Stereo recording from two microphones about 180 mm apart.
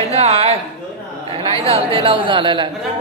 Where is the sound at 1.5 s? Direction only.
35° right (ahead or behind).